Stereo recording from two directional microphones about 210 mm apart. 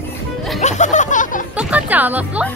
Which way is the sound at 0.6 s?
35° left (ahead or behind).